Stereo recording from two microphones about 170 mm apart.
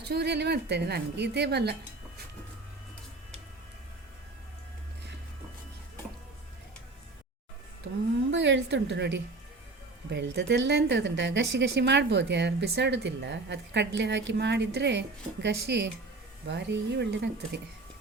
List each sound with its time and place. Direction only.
0.0 s a woman's voice: 80° right
8.3 s a woman's voice: 90° right